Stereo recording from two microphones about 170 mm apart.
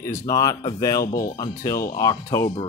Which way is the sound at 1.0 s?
55° left (ahead or behind).